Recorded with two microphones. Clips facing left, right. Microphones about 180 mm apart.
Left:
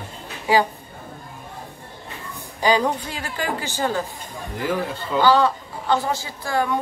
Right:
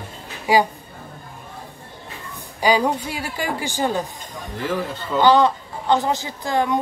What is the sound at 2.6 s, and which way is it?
A woman's voice, 10° right (ahead or behind).